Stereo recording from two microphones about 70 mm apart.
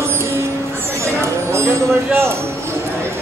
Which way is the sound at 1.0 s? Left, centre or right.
Right.